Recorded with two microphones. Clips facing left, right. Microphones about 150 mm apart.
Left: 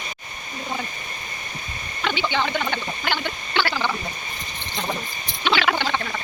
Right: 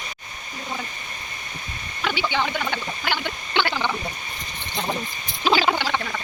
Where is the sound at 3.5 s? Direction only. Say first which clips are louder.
Even; 15° right (ahead or behind).